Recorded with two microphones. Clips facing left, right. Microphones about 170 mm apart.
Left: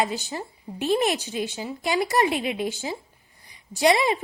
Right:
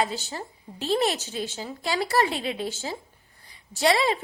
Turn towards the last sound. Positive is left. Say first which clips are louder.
# left 2 dB
turn(degrees=20)  # may be behind; listen again after turning